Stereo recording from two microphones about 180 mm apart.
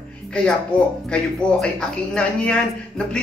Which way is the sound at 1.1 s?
5° left (ahead or behind).